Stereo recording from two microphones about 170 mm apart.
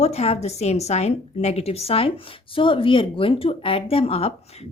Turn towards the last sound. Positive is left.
turn(degrees=40)  # may be behind; listen again after turning